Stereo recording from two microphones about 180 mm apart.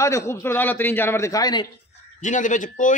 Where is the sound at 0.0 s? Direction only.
15° left (ahead or behind).